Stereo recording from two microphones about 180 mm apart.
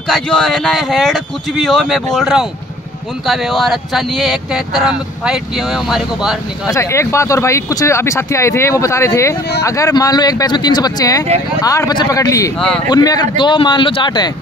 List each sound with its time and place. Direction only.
0.1 s speech: 5° left (ahead or behind)
6.7 s speech: 15° left (ahead or behind)
12.5 s speech: 5° left (ahead or behind)
12.9 s speech: 20° left (ahead or behind)